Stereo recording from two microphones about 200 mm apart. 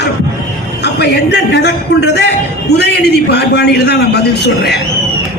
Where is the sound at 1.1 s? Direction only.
55° left (ahead or behind).